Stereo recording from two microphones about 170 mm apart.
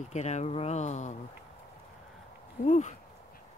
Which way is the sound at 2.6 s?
45° left (ahead or behind).